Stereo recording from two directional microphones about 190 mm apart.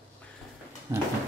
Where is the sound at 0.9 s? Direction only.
20° right (ahead or behind).